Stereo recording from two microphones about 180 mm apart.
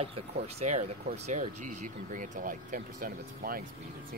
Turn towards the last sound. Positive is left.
turn(degrees=-50)  # may be behind; listen again after turning